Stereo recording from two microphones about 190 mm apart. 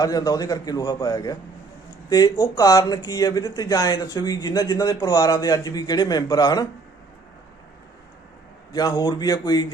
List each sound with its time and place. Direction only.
0.0 s speech: 20° left (ahead or behind)
8.7 s speech: 20° left (ahead or behind)